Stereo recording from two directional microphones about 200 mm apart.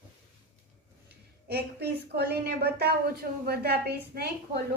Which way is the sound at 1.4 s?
55° right (ahead or behind).